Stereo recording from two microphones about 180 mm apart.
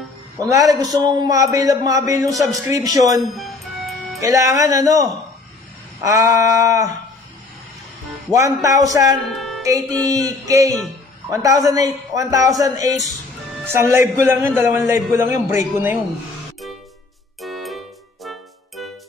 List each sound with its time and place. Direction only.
0.4 s a man's voice: 20° right (ahead or behind)
3.2 s music: centre (ahead or behind)
4.2 s a man's voice: 20° right (ahead or behind)
8.3 s a man's voice: 15° right (ahead or behind)
9.3 s music: centre (ahead or behind)
9.6 s a man's voice: 20° right (ahead or behind)
17.4 s music: centre (ahead or behind)